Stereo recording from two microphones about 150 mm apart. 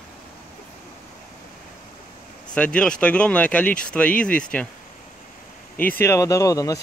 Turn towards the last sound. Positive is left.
turn(degrees=20)  # may be behind; listen again after turning